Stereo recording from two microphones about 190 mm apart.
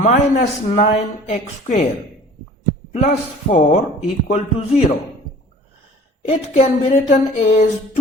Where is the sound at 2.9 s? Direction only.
40° left (ahead or behind).